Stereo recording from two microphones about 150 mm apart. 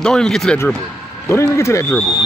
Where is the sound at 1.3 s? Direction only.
20° left (ahead or behind).